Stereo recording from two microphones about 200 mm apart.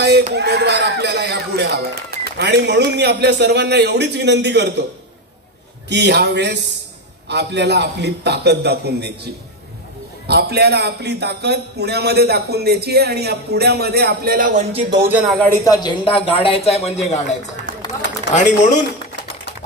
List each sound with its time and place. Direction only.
0.3 s speech: 55° right (ahead or behind)
5.9 s a man's voice: 55° right (ahead or behind)
15.0 s speech: 5° right (ahead or behind)
15.6 s speech: 20° left (ahead or behind)
18.3 s speech: 35° left (ahead or behind)